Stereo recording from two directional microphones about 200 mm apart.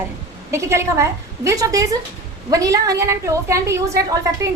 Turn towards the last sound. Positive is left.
turn(degrees=-15)  # may be behind; listen again after turning